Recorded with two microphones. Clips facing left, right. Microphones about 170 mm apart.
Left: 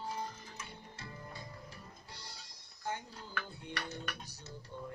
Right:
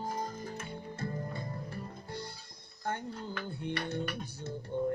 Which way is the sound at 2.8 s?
55° right (ahead or behind).